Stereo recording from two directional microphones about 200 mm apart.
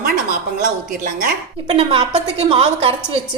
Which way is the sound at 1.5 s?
30° right (ahead or behind).